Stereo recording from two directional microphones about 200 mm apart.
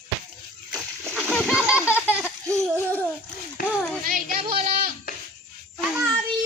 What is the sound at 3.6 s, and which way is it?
Children playing, 45° left (ahead or behind).